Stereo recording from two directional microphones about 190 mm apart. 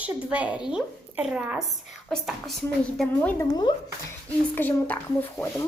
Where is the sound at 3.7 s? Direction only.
25° left (ahead or behind).